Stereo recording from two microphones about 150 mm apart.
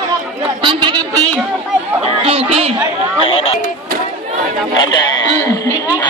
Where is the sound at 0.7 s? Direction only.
30° right (ahead or behind).